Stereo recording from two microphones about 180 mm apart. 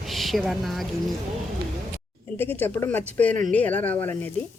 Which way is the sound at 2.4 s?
10° left (ahead or behind).